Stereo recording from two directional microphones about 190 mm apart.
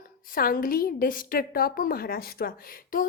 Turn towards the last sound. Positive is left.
turn(degrees=50)  # may be behind; listen again after turning